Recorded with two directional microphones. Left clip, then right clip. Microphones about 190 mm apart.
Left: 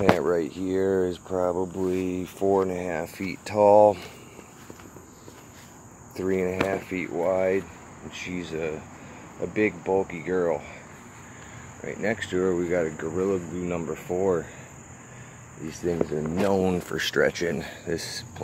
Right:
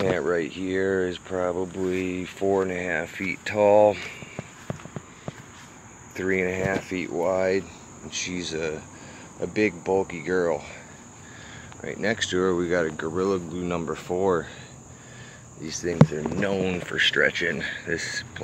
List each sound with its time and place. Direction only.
0.2 s speech: 10° left (ahead or behind)
6.1 s speech: centre (ahead or behind)
11.8 s speech: 5° right (ahead or behind)
15.6 s speech: 10° left (ahead or behind)
16.5 s speech: 25° left (ahead or behind); by 18.4 s 10° left (ahead or behind)